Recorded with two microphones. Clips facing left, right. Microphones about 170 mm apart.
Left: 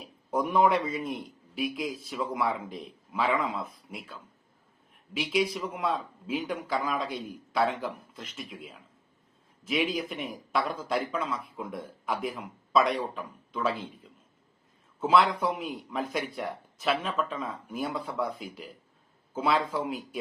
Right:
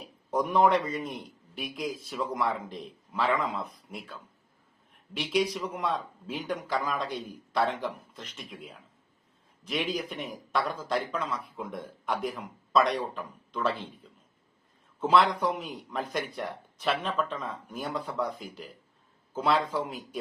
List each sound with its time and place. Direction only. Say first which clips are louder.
0.3 s a man's voice: even; 10° left (ahead or behind)
15.0 s a man's voice: even; 5° left (ahead or behind)